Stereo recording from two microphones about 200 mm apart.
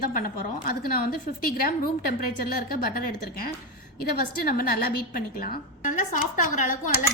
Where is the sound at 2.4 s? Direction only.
50° left (ahead or behind).